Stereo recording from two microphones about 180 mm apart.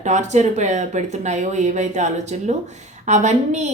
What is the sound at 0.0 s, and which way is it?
A woman's voice, 40° right (ahead or behind).